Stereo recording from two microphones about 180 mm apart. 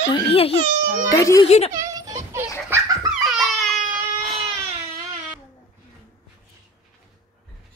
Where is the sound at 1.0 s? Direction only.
20° left (ahead or behind).